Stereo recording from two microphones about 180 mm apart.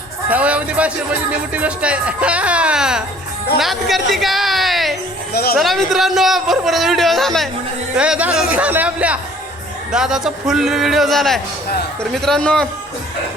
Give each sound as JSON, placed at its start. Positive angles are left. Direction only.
{"t": 0.3, "sound": "a woman's voice", "side_deg": -5}
{"t": 5.3, "sound": "speech", "side_deg": 60}
{"t": 5.5, "sound": "speech", "side_deg": 0}